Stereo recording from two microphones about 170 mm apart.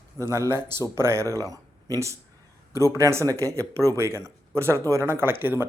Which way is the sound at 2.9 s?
15° right (ahead or behind).